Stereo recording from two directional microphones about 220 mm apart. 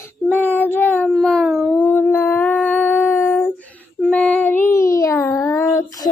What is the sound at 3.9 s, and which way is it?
Child singing, 5° left (ahead or behind).